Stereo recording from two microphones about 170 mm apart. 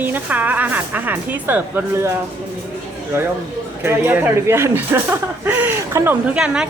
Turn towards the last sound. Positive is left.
turn(degrees=-5)  # may be behind; listen again after turning